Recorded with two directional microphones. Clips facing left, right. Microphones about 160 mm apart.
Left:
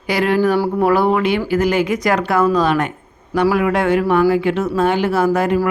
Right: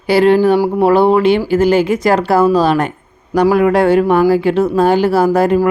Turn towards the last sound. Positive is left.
turn(degrees=-40)  # may be behind; listen again after turning